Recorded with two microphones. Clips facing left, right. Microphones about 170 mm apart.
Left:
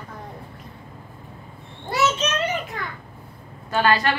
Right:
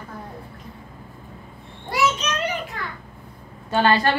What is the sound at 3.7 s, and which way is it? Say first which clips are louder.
Speech: right 1 dB; 30° right (ahead or behind).